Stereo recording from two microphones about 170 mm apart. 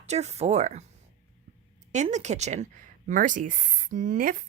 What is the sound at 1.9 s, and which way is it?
Speech, 45° right (ahead or behind).